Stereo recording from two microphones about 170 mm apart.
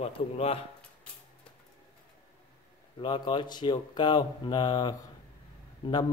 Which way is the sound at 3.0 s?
30° left (ahead or behind).